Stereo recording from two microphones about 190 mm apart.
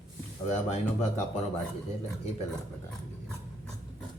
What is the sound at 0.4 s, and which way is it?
Speech, 35° left (ahead or behind).